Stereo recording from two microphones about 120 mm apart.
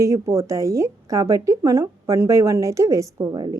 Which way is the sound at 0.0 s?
25° right (ahead or behind).